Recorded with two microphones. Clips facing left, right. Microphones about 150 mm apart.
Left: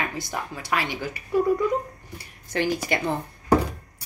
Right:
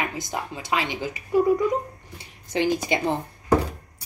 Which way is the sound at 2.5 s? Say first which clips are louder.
Right 2 dB; 20° right (ahead or behind).